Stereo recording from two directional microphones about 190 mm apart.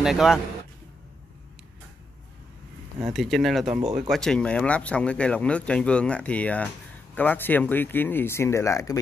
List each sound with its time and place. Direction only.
0.0 s speech: centre (ahead or behind)
3.0 s speech: centre (ahead or behind); by 8.9 s 15° left (ahead or behind)